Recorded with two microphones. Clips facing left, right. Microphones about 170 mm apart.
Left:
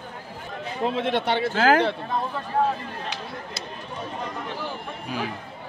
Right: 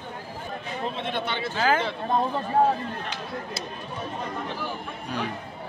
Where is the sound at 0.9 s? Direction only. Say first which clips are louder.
Left 8 dB; 85° left; by 1.9 s 65° left (ahead or behind).